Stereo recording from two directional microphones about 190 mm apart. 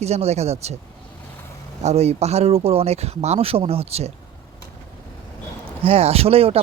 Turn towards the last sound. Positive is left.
turn(degrees=-30)  # may be behind; listen again after turning